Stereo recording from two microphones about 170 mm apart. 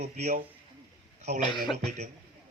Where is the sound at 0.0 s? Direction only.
45° right (ahead or behind).